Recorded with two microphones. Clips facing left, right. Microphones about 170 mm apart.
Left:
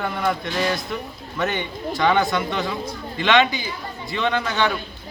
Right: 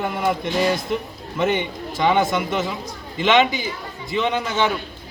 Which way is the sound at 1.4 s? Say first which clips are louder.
Right 4 dB; 15° right (ahead or behind).